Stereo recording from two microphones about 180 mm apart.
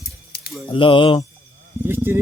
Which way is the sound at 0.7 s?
30° left (ahead or behind).